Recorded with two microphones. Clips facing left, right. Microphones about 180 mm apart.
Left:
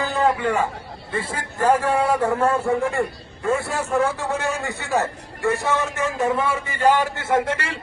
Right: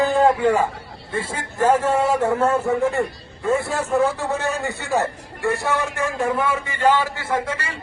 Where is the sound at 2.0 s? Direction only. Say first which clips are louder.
Right 1 dB; 25° right (ahead or behind).